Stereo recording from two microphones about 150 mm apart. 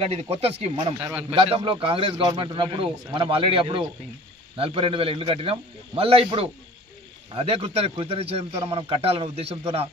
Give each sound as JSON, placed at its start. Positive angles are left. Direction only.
{"t": 0.0, "sound": "a man's voice", "side_deg": -40}
{"t": 0.9, "sound": "a man's voice", "side_deg": -10}
{"t": 1.3, "sound": "a man's voice", "side_deg": -35}